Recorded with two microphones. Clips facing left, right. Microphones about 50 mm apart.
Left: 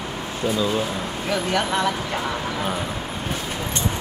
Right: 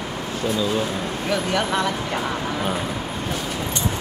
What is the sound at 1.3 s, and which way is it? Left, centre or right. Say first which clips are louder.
Speech: even; centre.